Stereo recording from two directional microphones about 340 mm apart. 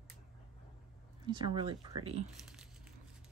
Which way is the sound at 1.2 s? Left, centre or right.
Centre.